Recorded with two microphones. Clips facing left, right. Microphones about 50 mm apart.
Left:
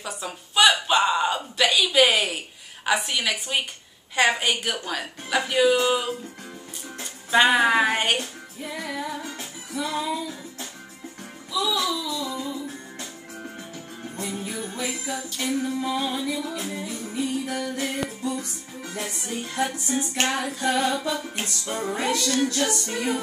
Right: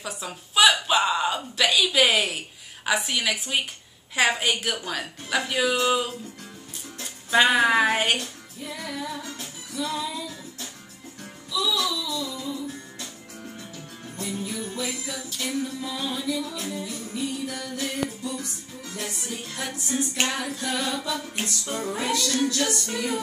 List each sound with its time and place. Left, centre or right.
0.0 s a woman's voice: centre
7.3 s a woman's voice: centre
8.2 s music: centre
11.5 s music: left
19.4 s music: centre
19.9 s a woman's voice: centre
20.2 s music: centre